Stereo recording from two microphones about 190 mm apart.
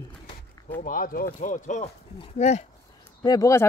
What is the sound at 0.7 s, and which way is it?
Speech, 45° left (ahead or behind).